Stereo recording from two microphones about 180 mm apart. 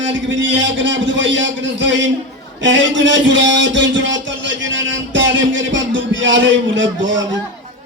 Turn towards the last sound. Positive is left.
turn(degrees=-90)